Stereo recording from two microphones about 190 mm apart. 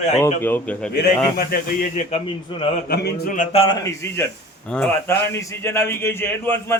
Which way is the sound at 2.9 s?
55° left (ahead or behind).